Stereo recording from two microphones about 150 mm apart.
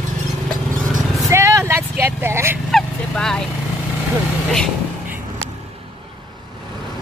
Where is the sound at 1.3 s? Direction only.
20° right (ahead or behind).